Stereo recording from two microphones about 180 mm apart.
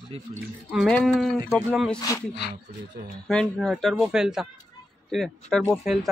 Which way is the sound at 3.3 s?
5° left (ahead or behind).